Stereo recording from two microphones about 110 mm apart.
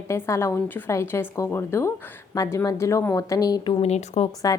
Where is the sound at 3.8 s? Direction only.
80° left.